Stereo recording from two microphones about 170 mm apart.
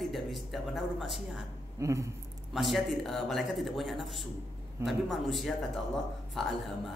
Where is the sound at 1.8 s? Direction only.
20° right (ahead or behind).